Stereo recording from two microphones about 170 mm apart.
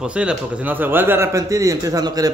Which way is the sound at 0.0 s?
5° right (ahead or behind).